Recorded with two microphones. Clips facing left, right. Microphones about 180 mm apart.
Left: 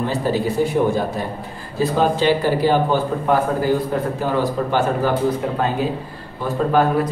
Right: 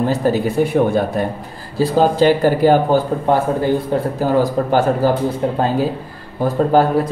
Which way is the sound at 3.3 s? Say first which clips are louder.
Even; 30° right (ahead or behind).